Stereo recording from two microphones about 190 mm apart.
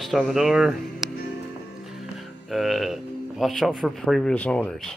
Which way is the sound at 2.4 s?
Centre (ahead or behind).